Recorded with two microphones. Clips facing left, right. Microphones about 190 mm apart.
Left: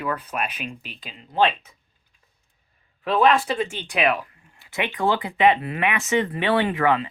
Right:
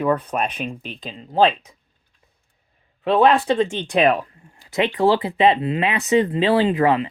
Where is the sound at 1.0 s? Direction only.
35° right (ahead or behind).